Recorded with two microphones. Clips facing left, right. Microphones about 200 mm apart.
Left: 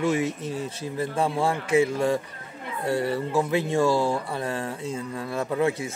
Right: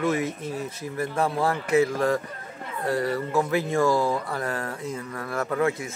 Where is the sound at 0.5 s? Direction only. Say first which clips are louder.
Left 1 dB; 30° left (ahead or behind).